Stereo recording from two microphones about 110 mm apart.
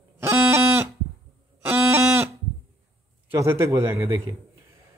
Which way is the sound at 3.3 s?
25° right (ahead or behind).